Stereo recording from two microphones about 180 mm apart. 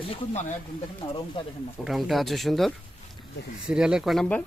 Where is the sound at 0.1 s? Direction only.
40° left (ahead or behind).